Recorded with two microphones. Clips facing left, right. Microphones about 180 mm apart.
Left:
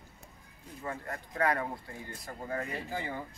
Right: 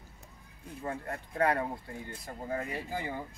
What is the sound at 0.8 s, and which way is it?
Speech, 30° right (ahead or behind).